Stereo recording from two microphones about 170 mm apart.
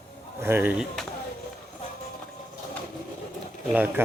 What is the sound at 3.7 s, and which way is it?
Speech, 10° right (ahead or behind).